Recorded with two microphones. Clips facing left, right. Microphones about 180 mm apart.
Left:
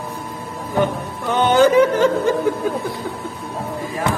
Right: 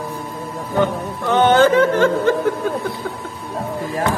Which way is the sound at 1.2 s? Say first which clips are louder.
Right 1 dB; 10° left (ahead or behind).